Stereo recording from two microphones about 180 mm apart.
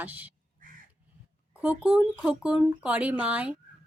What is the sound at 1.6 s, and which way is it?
Speech, 10° right (ahead or behind).